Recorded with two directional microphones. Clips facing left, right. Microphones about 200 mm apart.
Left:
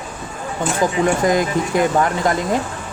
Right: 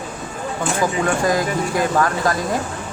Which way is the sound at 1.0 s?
20° left (ahead or behind).